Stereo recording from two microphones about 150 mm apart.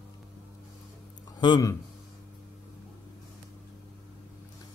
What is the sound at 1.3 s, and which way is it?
Speech, 30° left (ahead or behind).